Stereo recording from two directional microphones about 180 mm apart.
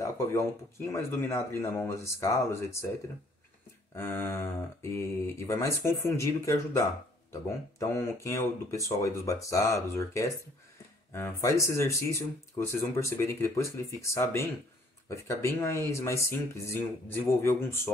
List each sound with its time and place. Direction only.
0.0 s speech: 15° left (ahead or behind)
3.9 s speech: 10° left (ahead or behind)